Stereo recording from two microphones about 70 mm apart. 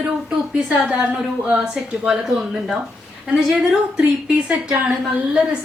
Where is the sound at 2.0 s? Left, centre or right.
Centre.